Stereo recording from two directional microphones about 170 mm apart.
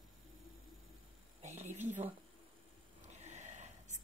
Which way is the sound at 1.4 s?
40° right (ahead or behind).